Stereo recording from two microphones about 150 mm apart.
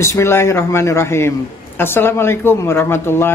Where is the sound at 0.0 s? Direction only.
20° left (ahead or behind).